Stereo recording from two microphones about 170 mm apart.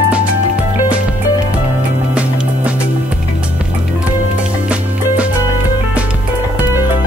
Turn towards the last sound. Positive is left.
turn(degrees=-10)  # may be behind; listen again after turning